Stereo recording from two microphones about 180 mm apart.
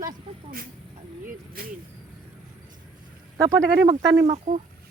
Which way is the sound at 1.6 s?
55° right (ahead or behind).